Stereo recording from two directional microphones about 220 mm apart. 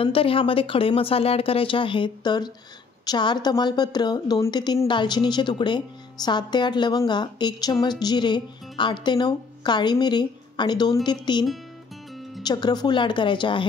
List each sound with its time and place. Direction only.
0.0 s a woman's voice: 25° left (ahead or behind)
12.4 s a woman's voice: 20° left (ahead or behind)